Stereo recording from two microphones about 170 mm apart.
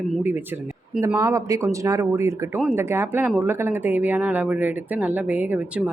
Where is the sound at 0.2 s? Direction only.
10° right (ahead or behind).